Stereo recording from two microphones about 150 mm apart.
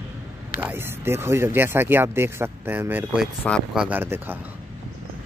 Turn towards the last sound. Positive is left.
turn(degrees=-15)  # may be behind; listen again after turning